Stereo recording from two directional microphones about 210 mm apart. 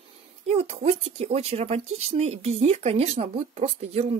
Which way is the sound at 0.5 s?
30° right (ahead or behind).